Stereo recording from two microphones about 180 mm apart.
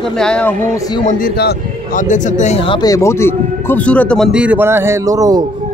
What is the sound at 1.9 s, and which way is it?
Speech, 45° left (ahead or behind).